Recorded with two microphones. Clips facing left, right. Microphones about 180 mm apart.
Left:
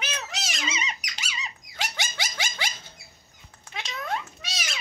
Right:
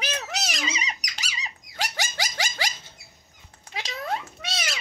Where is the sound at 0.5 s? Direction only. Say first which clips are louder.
Right 1 dB; 35° right (ahead or behind).